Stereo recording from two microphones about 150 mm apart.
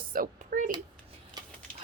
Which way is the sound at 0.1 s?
65° right (ahead or behind).